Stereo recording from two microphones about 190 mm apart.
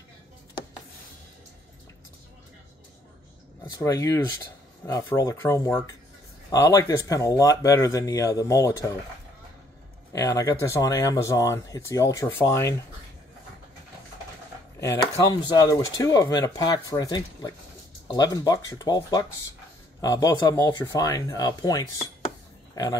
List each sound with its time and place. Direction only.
3.7 s speech: 15° left (ahead or behind)
10.1 s speech: 20° left (ahead or behind)
14.8 s speech: 15° left (ahead or behind)